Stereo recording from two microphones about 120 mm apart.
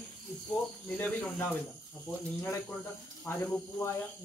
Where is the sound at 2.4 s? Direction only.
20° left (ahead or behind).